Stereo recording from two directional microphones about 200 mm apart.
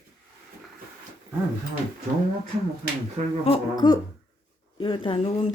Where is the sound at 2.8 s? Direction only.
50° right (ahead or behind).